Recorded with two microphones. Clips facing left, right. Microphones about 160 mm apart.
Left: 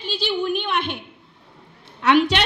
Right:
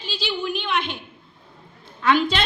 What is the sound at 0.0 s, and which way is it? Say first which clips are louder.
A woman's voice: left 4 dB; 55° left (ahead or behind).